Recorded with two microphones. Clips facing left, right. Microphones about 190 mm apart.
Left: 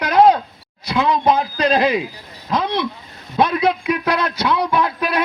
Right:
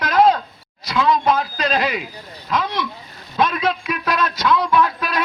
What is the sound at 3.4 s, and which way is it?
A man's voice, 15° left (ahead or behind).